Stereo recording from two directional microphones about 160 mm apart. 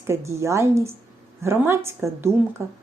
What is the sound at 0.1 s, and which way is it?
Speech, 15° right (ahead or behind).